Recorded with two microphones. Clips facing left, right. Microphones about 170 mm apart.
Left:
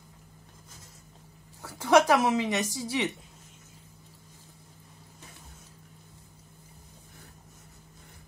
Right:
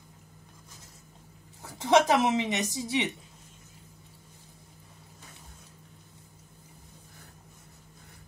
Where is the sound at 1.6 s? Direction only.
20° right (ahead or behind).